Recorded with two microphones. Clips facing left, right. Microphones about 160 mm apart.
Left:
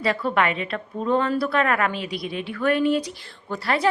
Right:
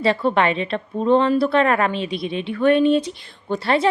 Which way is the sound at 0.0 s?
25° right (ahead or behind).